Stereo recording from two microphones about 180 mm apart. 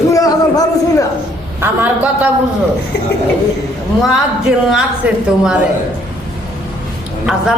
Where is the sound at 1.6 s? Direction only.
10° right (ahead or behind).